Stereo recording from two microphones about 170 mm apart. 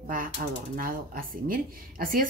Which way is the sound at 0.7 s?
55° right (ahead or behind).